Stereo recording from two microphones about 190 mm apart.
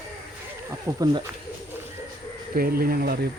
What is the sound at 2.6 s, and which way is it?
Speech, 50° right (ahead or behind).